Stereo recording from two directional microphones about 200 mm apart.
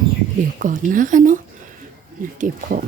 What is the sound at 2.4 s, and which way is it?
Speech, 45° right (ahead or behind).